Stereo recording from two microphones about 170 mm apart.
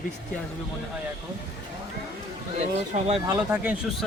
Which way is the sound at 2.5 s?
40° right (ahead or behind).